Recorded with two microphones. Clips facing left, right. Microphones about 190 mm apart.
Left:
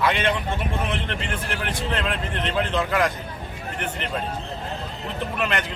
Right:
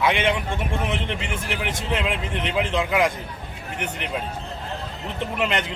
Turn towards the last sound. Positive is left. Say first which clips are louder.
# right 1 dB
turn(degrees=-20)  # may be behind; listen again after turning